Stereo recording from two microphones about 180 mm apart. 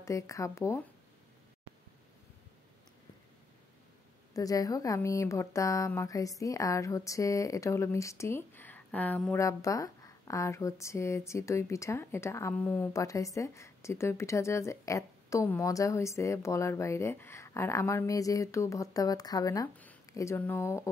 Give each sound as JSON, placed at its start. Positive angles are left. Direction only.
{"t": 0.0, "sound": "speech", "side_deg": 15}
{"t": 4.3, "sound": "speech", "side_deg": 20}